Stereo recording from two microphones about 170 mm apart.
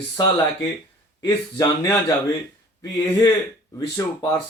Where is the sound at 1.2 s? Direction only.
25° left (ahead or behind).